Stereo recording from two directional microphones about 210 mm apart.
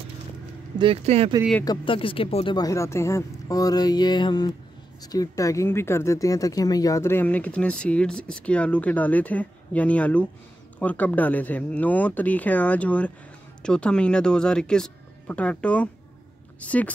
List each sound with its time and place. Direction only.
0.7 s speech: 25° right (ahead or behind)
1.6 s speech: 20° left (ahead or behind)